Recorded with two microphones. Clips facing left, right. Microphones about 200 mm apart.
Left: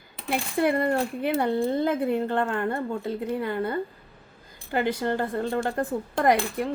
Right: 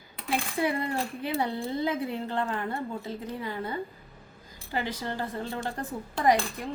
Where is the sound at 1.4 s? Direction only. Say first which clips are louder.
Left 6 dB; 55° left (ahead or behind).